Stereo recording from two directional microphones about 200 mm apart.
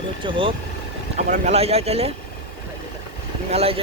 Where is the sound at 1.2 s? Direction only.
35° right (ahead or behind).